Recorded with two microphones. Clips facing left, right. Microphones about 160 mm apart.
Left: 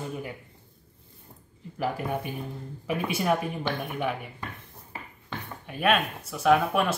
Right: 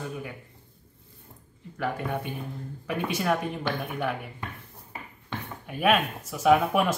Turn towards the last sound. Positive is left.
turn(degrees=-5)  # may be behind; listen again after turning